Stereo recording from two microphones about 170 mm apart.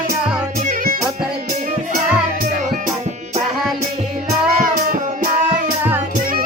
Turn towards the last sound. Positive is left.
turn(degrees=-50)  # may be behind; listen again after turning